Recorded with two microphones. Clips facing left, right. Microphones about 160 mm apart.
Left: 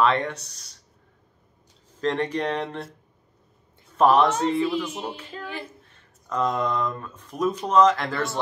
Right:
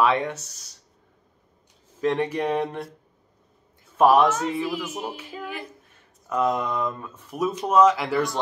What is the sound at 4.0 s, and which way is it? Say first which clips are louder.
Speech: right 1 dB; 10° right (ahead or behind).